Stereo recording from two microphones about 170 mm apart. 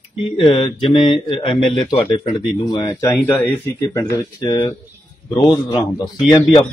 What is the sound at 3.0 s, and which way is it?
Speech, 10° left (ahead or behind).